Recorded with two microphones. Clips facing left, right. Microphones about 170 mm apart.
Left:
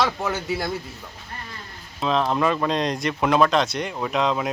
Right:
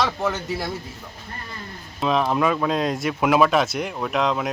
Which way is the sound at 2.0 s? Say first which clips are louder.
Right 1 dB; 5° right (ahead or behind).